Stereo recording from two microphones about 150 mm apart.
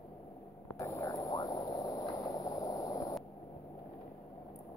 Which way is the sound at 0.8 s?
25° left (ahead or behind).